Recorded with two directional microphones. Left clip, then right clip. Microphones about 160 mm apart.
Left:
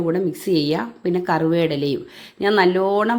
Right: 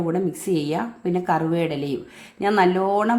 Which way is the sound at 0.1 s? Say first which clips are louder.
Left 4 dB; 15° left (ahead or behind).